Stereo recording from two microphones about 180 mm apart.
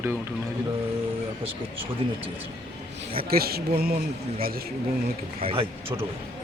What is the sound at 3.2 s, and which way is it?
Speech, 55° right (ahead or behind).